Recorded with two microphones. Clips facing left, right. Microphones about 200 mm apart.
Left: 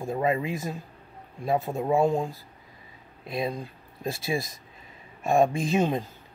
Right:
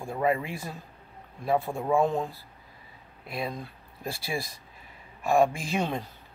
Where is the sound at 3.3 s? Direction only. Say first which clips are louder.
Left 4 dB; 20° left (ahead or behind).